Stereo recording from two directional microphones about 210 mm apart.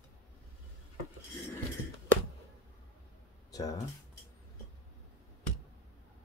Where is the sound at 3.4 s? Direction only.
15° left (ahead or behind).